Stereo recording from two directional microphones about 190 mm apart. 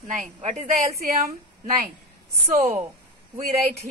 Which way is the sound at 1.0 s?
50° right (ahead or behind).